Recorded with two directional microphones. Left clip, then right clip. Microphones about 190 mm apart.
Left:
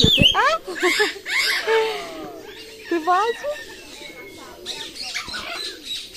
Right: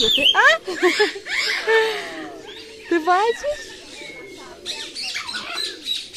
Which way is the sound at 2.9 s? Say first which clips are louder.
Right 1 dB; 25° right (ahead or behind).